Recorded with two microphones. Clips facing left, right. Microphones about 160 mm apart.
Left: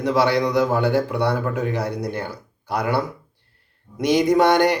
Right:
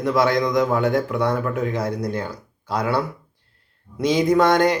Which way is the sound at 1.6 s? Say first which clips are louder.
Even; 75° left (ahead or behind).